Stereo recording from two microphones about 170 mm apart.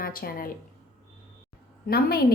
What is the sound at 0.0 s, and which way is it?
Speech, 60° left (ahead or behind).